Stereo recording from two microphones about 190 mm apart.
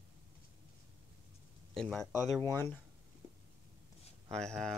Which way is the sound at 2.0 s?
15° left (ahead or behind).